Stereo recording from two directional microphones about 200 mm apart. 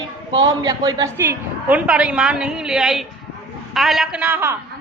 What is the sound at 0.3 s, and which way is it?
A woman's voice, 20° right (ahead or behind).